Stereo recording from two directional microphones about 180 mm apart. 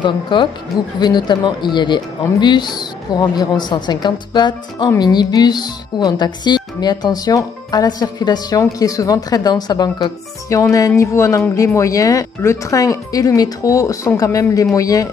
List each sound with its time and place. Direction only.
0.0 s a woman's voice: 25° left (ahead or behind)